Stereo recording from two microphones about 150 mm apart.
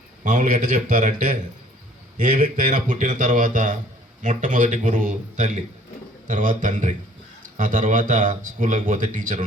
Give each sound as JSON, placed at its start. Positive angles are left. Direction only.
{"t": 0.3, "sound": "speech", "side_deg": -60}